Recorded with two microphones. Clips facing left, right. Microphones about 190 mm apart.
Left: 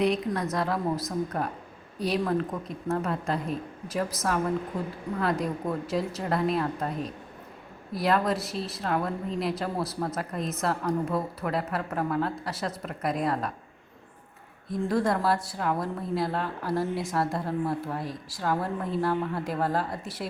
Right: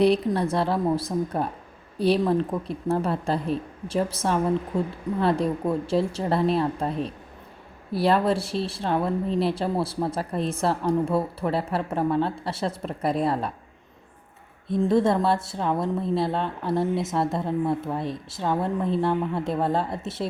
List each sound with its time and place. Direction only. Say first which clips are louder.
0.0 s speech: right 5 dB; 30° right (ahead or behind)
14.7 s speech: right 5 dB; 25° right (ahead or behind)